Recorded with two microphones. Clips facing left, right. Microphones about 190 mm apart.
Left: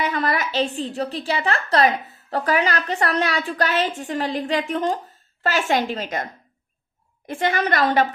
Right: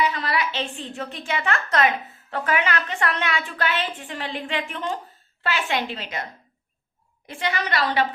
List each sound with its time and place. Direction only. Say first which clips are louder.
0.0 s a woman's voice: left 1 dB; 50° left (ahead or behind)
7.3 s a woman's voice: left 6 dB; 50° left (ahead or behind)